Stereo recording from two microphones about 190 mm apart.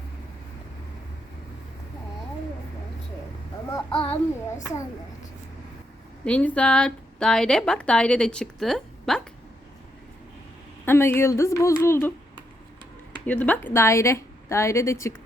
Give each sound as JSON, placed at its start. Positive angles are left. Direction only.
{"t": 3.7, "sound": "child singing", "side_deg": 20}
{"t": 6.2, "sound": "a woman's voice", "side_deg": 5}
{"t": 10.8, "sound": "a woman's voice", "side_deg": 10}
{"t": 13.2, "sound": "a woman's voice", "side_deg": 10}